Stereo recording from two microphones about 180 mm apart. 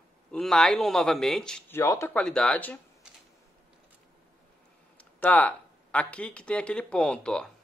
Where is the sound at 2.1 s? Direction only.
5° left (ahead or behind).